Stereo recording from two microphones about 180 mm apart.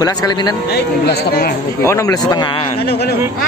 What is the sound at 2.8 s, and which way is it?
Speech, 65° left (ahead or behind).